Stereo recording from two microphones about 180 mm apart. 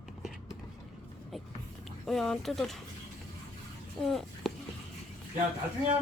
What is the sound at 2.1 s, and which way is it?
Speech, centre (ahead or behind).